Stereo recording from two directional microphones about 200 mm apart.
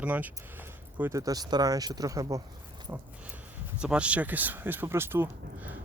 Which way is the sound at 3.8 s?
5° right (ahead or behind).